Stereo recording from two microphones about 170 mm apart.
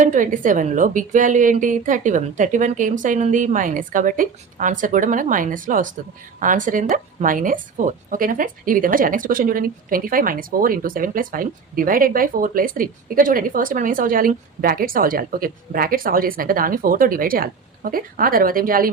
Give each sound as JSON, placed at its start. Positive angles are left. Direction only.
{"t": 0.0, "sound": "a woman's voice", "side_deg": -50}